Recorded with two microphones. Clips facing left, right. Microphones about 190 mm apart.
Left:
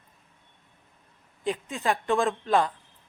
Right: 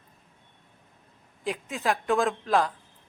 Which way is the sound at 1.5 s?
Centre (ahead or behind).